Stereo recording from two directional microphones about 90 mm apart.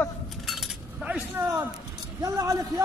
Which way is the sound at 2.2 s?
35° right (ahead or behind).